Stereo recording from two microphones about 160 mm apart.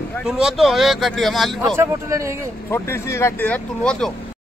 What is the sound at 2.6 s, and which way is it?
Speech, 15° left (ahead or behind).